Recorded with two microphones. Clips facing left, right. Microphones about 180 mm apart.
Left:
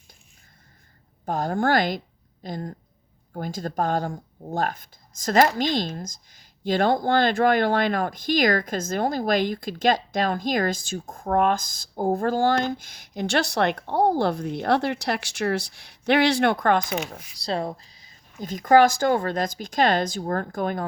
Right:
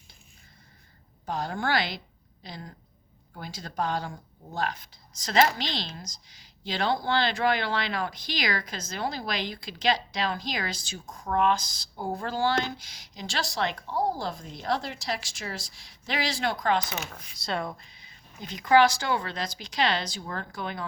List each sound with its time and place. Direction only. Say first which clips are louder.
1.2 s speech: left 7 dB; 50° left (ahead or behind)
17.1 s speech: left 4 dB; 35° left (ahead or behind)